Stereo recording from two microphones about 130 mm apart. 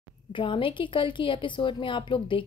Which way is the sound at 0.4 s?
40° left (ahead or behind).